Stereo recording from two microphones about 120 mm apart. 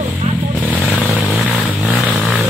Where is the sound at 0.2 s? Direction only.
60° right (ahead or behind).